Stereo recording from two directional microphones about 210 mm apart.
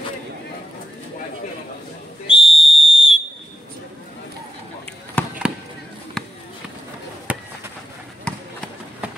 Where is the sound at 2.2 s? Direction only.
25° left (ahead or behind).